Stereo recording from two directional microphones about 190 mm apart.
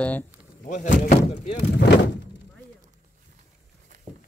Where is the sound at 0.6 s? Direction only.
40° left (ahead or behind).